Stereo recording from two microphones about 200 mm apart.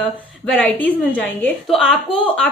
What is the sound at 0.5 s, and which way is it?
A woman's voice, 5° left (ahead or behind).